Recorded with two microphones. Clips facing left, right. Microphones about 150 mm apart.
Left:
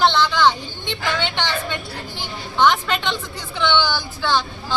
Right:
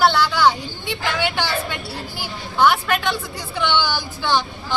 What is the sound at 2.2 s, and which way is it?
Speech, 10° right (ahead or behind).